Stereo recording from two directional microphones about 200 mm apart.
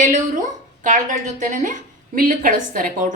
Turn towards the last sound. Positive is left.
turn(degrees=-45)  # may be behind; listen again after turning